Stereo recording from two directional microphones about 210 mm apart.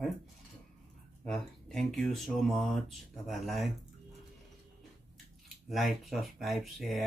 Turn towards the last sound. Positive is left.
turn(degrees=0)  # may be behind; listen again after turning